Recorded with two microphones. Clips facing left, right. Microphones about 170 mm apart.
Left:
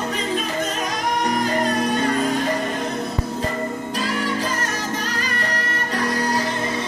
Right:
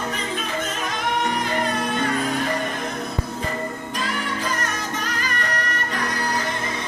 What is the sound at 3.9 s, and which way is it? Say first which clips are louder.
Music: left 4 dB; 35° left (ahead or behind).